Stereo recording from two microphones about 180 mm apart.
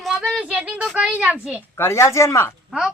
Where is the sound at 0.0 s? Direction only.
Centre (ahead or behind).